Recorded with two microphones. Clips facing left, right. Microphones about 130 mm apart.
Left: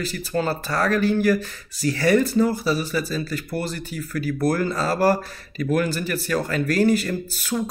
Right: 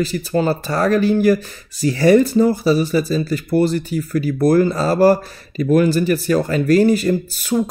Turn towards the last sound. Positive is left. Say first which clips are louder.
# right 7 dB
turn(degrees=-20)  # may be behind; listen again after turning